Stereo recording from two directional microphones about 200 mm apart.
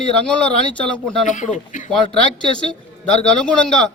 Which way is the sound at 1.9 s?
5° left (ahead or behind).